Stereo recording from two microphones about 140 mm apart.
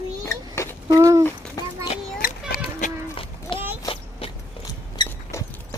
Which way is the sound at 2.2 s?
90° left.